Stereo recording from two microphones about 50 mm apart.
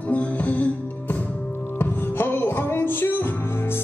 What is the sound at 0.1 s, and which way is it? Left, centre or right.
Music, left.